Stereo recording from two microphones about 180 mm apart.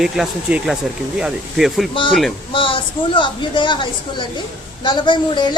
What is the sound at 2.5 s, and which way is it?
A woman's voice, 30° left (ahead or behind).